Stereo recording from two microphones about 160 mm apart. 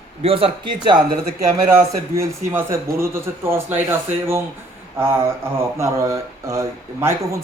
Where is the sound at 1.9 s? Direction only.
20° right (ahead or behind).